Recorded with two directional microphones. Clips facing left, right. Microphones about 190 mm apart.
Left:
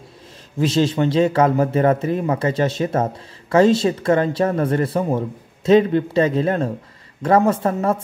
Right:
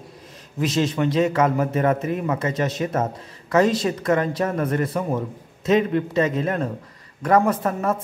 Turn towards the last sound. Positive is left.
turn(degrees=30)  # may be behind; listen again after turning